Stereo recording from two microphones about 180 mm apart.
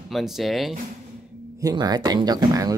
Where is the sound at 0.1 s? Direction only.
Centre (ahead or behind).